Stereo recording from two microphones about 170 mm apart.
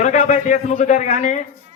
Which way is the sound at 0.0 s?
45° left (ahead or behind).